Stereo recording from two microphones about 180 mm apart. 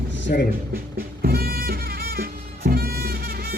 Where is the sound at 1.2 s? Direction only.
55° right (ahead or behind).